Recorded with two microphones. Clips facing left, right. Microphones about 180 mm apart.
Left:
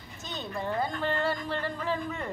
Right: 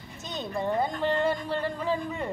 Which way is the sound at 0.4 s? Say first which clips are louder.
Right 4 dB; 20° right (ahead or behind).